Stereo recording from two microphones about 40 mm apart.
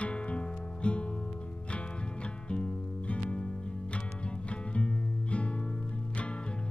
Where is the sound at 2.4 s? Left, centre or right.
Left.